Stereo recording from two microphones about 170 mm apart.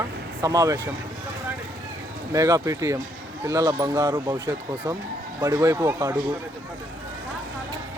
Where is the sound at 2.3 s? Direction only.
20° right (ahead or behind).